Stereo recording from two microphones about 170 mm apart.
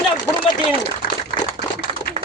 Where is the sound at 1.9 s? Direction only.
35° right (ahead or behind).